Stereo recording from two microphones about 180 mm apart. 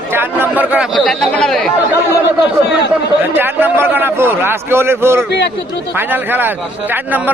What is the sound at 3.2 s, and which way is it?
A man's voice, 10° right (ahead or behind).